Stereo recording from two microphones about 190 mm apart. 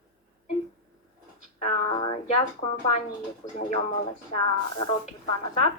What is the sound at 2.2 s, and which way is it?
Speech, 25° left (ahead or behind).